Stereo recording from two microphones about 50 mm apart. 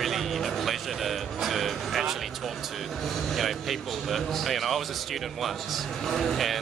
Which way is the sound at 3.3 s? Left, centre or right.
Centre.